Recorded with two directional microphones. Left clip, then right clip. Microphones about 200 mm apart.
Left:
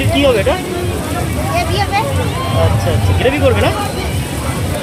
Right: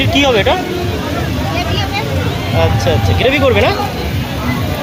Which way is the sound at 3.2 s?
25° right (ahead or behind).